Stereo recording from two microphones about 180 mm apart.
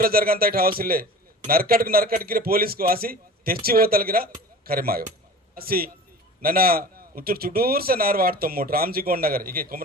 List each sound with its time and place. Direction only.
0.0 s a man's voice: 55° right (ahead or behind)